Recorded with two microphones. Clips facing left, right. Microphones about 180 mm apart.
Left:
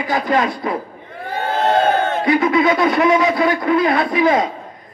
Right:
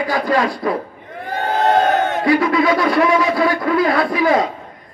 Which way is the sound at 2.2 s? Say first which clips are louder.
Even; 20° left (ahead or behind).